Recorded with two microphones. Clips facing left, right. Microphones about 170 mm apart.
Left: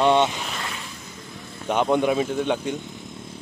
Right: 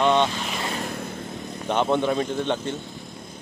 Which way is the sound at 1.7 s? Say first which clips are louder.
Left 2 dB; 10° left (ahead or behind).